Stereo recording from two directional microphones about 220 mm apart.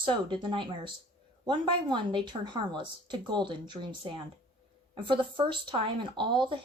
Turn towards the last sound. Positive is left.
turn(degrees=-20)  # may be behind; listen again after turning